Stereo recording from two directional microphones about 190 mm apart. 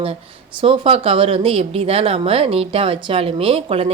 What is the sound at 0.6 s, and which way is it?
A woman's voice, 30° right (ahead or behind).